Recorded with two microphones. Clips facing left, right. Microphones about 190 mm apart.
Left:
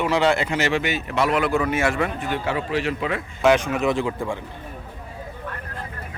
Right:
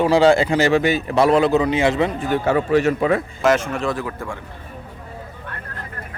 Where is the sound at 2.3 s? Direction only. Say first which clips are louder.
Right 7 dB; 45° right (ahead or behind).